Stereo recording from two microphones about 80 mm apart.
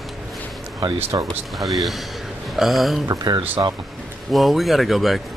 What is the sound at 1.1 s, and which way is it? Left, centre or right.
Speech, right.